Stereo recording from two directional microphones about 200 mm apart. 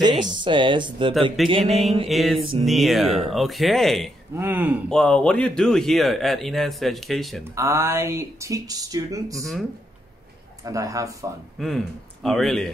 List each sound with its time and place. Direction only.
0.0 s speech: 20° right (ahead or behind)
1.5 s mantra: 30° right (ahead or behind)
2.0 s speech: centre (ahead or behind)
4.4 s speech: 10° right (ahead or behind)
4.8 s speech: 5° left (ahead or behind)
7.5 s speech: 15° right (ahead or behind)
9.4 s speech: centre (ahead or behind)
10.6 s speech: 15° right (ahead or behind)
11.6 s speech: centre (ahead or behind)